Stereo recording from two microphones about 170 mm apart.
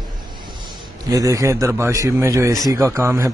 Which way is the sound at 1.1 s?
20° right (ahead or behind).